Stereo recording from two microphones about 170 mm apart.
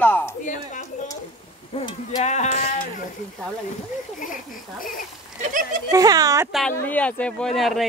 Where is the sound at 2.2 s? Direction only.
45° left (ahead or behind).